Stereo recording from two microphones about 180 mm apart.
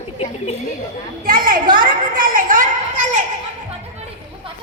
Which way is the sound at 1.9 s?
50° right (ahead or behind).